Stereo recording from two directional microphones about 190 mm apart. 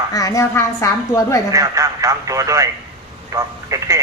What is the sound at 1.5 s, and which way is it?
Speech, 15° right (ahead or behind).